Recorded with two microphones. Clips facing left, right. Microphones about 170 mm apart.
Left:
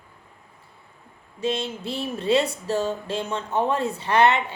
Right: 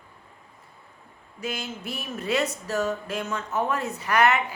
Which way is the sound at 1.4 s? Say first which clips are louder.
Left 6 dB; 30° left (ahead or behind).